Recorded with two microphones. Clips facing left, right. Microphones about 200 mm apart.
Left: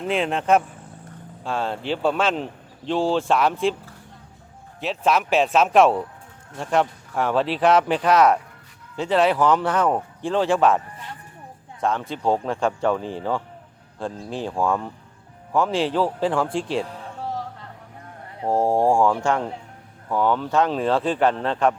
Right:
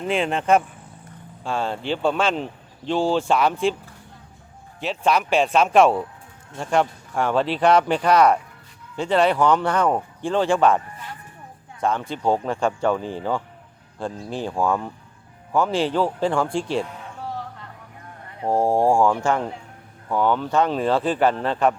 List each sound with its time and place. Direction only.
0.0 s speech: centre (ahead or behind)
4.8 s speech: centre (ahead or behind)
11.8 s speech: centre (ahead or behind)
16.8 s music: 35° left (ahead or behind)
18.4 s speech: centre (ahead or behind)